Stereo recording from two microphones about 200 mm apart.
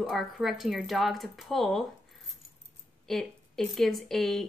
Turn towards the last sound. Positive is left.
turn(degrees=0)  # may be behind; listen again after turning